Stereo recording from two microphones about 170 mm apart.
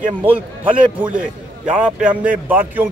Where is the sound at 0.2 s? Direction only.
10° right (ahead or behind).